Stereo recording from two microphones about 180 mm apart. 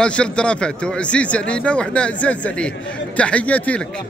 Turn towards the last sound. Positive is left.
turn(degrees=10)  # may be behind; listen again after turning